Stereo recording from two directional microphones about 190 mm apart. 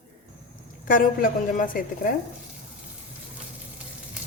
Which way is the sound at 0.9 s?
45° left (ahead or behind).